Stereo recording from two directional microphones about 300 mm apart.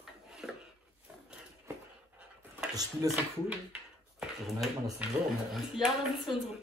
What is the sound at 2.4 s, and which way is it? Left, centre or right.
A woman's voice, centre.